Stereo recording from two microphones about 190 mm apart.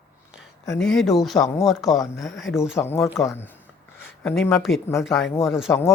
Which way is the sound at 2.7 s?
15° left (ahead or behind).